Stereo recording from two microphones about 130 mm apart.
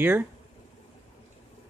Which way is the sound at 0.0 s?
15° right (ahead or behind).